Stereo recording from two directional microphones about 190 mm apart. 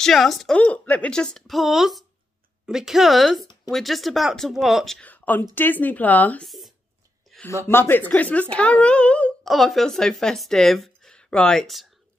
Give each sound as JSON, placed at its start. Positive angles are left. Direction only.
{"t": 0.0, "sound": "speech", "side_deg": 0}
{"t": 7.4, "sound": "speech", "side_deg": 10}